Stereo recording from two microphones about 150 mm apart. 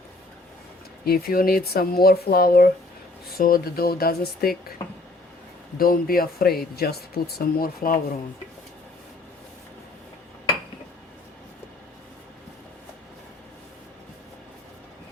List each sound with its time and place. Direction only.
1.0 s speech: 80° left
5.7 s speech: 80° left